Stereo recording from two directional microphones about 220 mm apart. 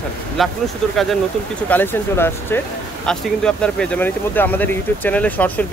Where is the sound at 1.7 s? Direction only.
10° left (ahead or behind).